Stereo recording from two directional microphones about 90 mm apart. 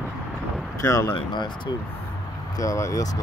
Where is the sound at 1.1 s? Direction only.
60° left (ahead or behind).